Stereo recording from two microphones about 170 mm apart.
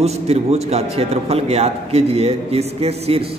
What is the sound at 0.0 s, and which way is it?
A man's voice, 40° right (ahead or behind).